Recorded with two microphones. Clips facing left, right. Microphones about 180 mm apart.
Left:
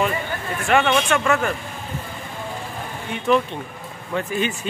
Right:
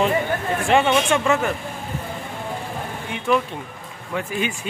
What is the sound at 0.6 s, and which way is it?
Speech, 25° right (ahead or behind).